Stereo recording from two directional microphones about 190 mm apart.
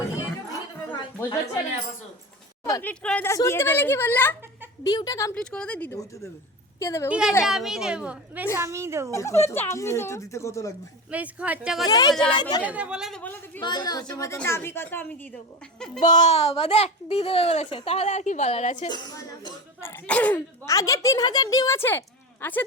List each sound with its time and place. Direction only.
2.8 s speech: 5° left (ahead or behind)
4.8 s a woman's voice: 20° left (ahead or behind)
5.4 s a woman's voice: 5° left (ahead or behind)
7.1 s a woman's voice: 5° right (ahead or behind)
9.0 s speech: 15° left (ahead or behind)
11.1 s speech: 5° right (ahead or behind)
11.9 s a woman's voice: 20° left (ahead or behind)
12.6 s a woman's voice: 5° right (ahead or behind); by 13.6 s 10° left (ahead or behind)
13.6 s a woman's voice: 20° left (ahead or behind)
16.0 s speech: 40° left (ahead or behind)
18.9 s speech: 20° left (ahead or behind)